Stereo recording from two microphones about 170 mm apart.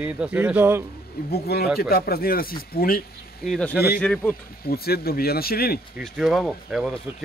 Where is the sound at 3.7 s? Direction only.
65° left (ahead or behind).